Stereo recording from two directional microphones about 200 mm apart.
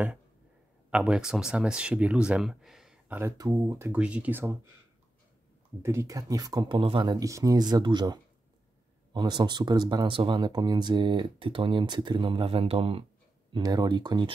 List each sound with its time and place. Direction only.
0.8 s speech: 5° right (ahead or behind)
3.2 s speech: 15° right (ahead or behind)
5.8 s speech: 15° right (ahead or behind)